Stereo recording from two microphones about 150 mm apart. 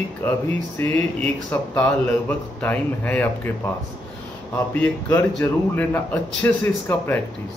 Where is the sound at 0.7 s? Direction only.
15° left (ahead or behind).